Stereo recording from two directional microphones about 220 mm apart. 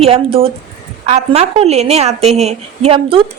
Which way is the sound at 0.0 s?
25° right (ahead or behind).